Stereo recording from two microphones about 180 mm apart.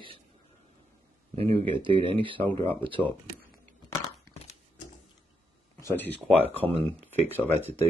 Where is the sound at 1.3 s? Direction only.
30° right (ahead or behind).